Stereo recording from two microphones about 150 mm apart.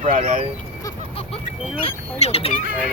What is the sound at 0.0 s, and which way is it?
Speech, 50° right (ahead or behind).